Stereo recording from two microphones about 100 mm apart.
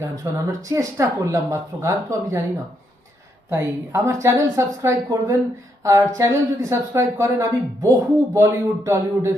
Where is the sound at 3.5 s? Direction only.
25° right (ahead or behind).